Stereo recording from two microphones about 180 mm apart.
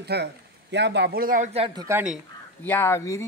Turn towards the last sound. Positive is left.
turn(degrees=15)  # may be behind; listen again after turning